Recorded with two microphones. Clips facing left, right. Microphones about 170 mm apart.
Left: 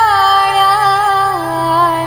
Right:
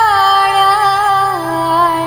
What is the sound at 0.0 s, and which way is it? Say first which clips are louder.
Music: even; centre (ahead or behind).